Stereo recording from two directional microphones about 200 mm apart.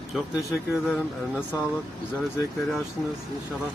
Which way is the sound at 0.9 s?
10° left (ahead or behind).